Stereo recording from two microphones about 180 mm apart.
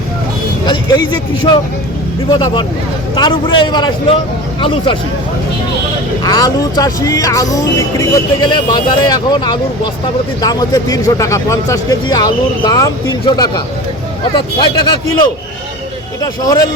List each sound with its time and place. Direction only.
0.6 s speech: 25° left (ahead or behind)
6.2 s speech: 20° left (ahead or behind)